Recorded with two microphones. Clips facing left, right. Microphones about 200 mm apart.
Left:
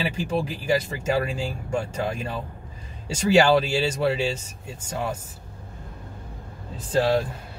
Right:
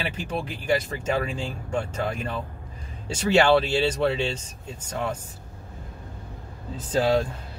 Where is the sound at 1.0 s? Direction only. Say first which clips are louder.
Left 2 dB; 10° left (ahead or behind).